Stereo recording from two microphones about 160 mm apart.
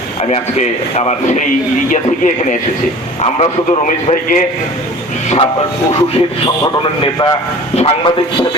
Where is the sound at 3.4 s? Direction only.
45° left (ahead or behind).